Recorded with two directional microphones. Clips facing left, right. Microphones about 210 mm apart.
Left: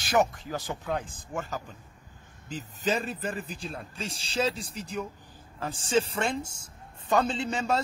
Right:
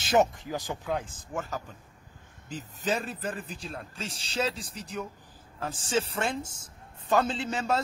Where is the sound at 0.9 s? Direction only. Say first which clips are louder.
Even; 5° right (ahead or behind).